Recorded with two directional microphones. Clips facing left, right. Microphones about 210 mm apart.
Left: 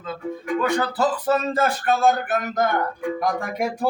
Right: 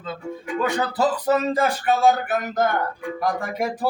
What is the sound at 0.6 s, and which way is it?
Speech, 20° right (ahead or behind).